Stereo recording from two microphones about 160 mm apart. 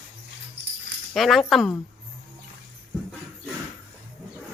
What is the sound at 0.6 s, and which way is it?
Dog, 90° right.